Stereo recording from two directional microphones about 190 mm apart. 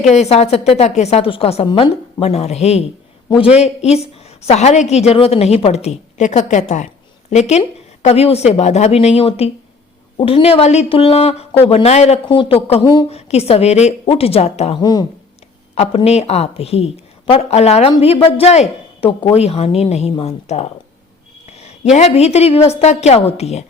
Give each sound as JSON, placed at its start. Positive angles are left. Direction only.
{"t": 0.1, "sound": "speech", "side_deg": 35}
{"t": 14.8, "sound": "speech", "side_deg": 20}
{"t": 15.7, "sound": "speech", "side_deg": 35}
{"t": 21.4, "sound": "a sound", "side_deg": 35}
{"t": 21.9, "sound": "speech", "side_deg": 35}